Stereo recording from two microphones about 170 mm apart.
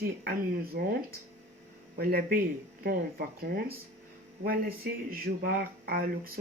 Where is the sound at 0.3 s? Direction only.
60° right (ahead or behind).